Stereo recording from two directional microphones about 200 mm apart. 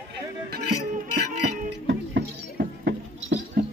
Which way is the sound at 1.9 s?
55° right (ahead or behind).